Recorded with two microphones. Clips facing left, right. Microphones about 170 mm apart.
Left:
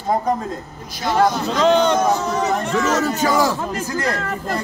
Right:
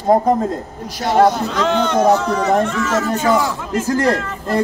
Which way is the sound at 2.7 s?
40° left (ahead or behind).